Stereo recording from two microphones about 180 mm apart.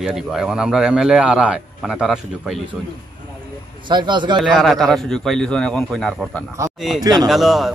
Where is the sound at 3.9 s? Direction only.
25° right (ahead or behind).